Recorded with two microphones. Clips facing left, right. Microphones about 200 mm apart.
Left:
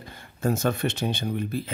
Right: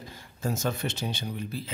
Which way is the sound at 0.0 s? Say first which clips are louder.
Left 6 dB; 60° left (ahead or behind).